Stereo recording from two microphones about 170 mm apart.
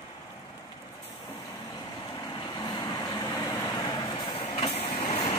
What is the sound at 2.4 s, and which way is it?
Vehicle, 25° left (ahead or behind).